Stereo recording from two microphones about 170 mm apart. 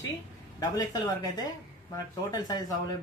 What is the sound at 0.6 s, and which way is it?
Speech, 20° left (ahead or behind).